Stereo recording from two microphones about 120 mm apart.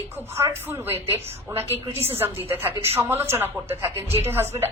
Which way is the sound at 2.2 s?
20° right (ahead or behind).